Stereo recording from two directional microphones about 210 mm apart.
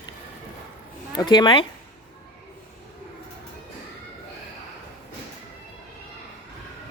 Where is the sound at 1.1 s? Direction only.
20° left (ahead or behind).